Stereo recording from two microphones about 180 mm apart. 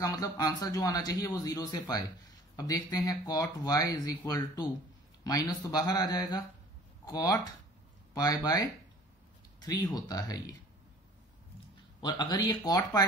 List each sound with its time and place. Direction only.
0.0 s speech: 20° left (ahead or behind)
9.7 s speech: 20° left (ahead or behind)
12.0 s speech: 25° left (ahead or behind)